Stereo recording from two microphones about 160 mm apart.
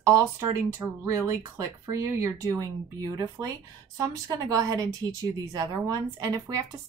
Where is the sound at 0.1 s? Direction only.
20° right (ahead or behind).